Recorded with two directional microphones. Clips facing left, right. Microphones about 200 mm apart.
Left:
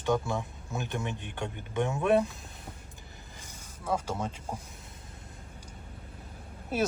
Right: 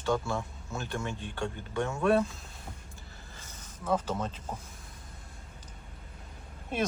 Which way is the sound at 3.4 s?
10° left (ahead or behind).